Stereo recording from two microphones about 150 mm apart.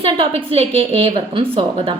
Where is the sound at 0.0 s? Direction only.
40° right (ahead or behind).